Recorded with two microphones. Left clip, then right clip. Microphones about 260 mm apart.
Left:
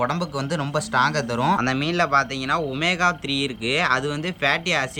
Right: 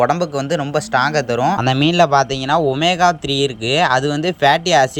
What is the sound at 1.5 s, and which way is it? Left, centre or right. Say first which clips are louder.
Speech: right 8 dB; right.